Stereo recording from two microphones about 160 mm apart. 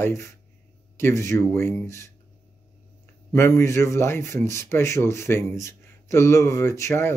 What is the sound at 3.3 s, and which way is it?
A man's voice, 15° left (ahead or behind).